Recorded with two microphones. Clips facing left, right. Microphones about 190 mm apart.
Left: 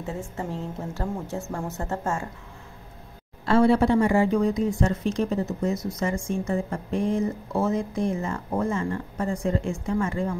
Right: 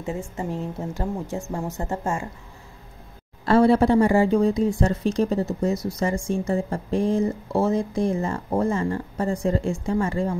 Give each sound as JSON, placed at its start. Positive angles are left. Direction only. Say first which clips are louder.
{"t": 0.0, "sound": "a woman's voice", "louder": "right 3 dB", "side_deg": -15}
{"t": 3.4, "sound": "a woman's voice", "louder": "right 2 dB", "side_deg": -35}